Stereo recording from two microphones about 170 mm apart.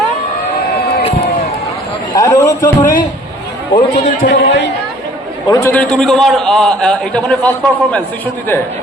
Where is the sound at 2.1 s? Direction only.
20° left (ahead or behind).